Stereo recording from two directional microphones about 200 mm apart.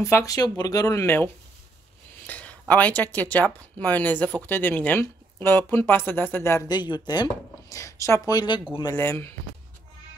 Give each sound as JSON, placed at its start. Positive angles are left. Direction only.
{"t": 0.0, "sound": "speech", "side_deg": 15}
{"t": 2.2, "sound": "a sound", "side_deg": 5}
{"t": 2.7, "sound": "speech", "side_deg": 10}